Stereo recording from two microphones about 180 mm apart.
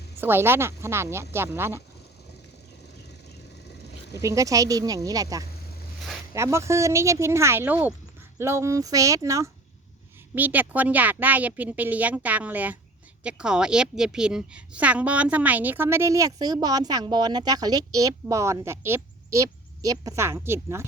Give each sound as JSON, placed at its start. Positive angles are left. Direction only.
{"t": 0.2, "sound": "a woman's voice", "side_deg": -10}
{"t": 4.1, "sound": "a woman's voice", "side_deg": -15}